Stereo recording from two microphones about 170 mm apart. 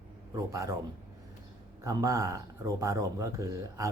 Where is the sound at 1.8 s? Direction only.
20° right (ahead or behind).